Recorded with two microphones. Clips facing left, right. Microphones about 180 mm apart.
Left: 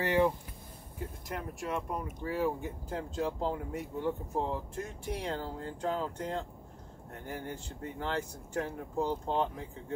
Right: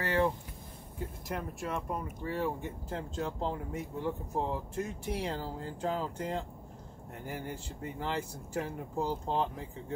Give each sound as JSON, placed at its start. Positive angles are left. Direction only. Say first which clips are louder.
{"t": 0.0, "sound": "speech", "louder": "left 2 dB", "side_deg": 15}
{"t": 1.3, "sound": "speech", "louder": "even", "side_deg": 0}